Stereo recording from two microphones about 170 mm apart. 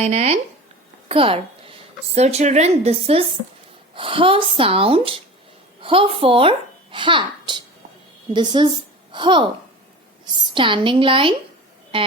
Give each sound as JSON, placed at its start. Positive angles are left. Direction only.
{"t": 0.0, "sound": "a child's voice", "side_deg": -40}
{"t": 10.5, "sound": "a woman's voice", "side_deg": -30}